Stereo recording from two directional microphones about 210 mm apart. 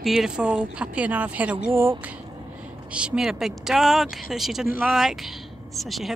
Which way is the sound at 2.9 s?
5° right (ahead or behind).